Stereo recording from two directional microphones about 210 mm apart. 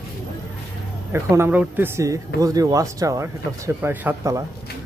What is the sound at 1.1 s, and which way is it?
Speech, 10° right (ahead or behind).